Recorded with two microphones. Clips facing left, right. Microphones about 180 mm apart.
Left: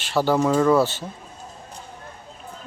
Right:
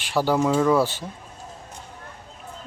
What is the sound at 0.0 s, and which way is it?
Speech, 10° right (ahead or behind).